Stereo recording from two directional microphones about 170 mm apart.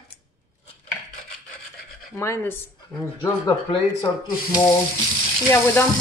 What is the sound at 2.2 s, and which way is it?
Speech, 15° left (ahead or behind).